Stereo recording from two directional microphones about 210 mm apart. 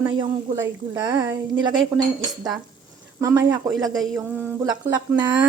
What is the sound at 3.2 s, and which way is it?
Speech, 15° right (ahead or behind).